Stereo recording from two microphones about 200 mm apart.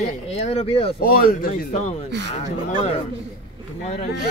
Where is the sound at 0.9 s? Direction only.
45° left (ahead or behind).